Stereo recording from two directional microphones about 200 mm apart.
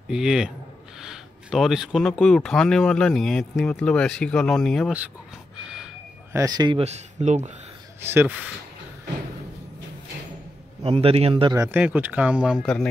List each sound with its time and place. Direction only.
0.1 s speech: 5° right (ahead or behind)
6.3 s a man's voice: 20° right (ahead or behind)
6.8 s speech: 35° right (ahead or behind)
8.0 s speech: 10° right (ahead or behind)
10.8 s speech: 30° right (ahead or behind); by 12.8 s centre (ahead or behind)